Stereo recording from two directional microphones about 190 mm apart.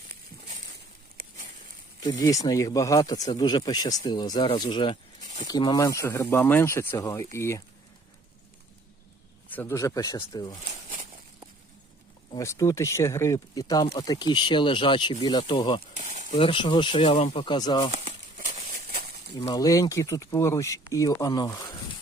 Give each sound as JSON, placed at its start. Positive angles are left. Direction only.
{"t": 2.0, "sound": "speech", "side_deg": 20}
{"t": 9.5, "sound": "speech", "side_deg": 10}
{"t": 12.4, "sound": "speech", "side_deg": 15}
{"t": 16.0, "sound": "a sound", "side_deg": -40}
{"t": 16.4, "sound": "speech", "side_deg": 25}
{"t": 17.9, "sound": "crumpling", "side_deg": -40}
{"t": 18.7, "sound": "a sound", "side_deg": -50}
{"t": 19.4, "sound": "speech", "side_deg": 20}